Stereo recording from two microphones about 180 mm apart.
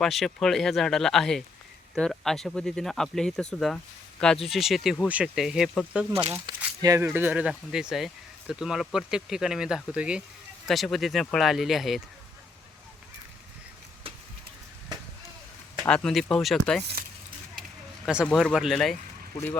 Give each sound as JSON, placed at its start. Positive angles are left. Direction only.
{"t": 0.0, "sound": "speech", "side_deg": 0}
{"t": 6.5, "sound": "speech", "side_deg": -25}
{"t": 15.8, "sound": "speech", "side_deg": 5}
{"t": 17.6, "sound": "a sound", "side_deg": -5}
{"t": 18.3, "sound": "speech", "side_deg": 5}